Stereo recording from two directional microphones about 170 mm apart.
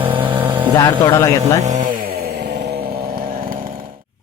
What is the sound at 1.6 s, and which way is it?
Chainsaw, 45° right (ahead or behind).